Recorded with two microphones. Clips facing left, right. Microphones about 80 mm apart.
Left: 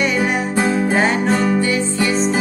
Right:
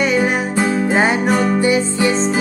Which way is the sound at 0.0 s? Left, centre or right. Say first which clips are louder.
Right 2 dB; centre.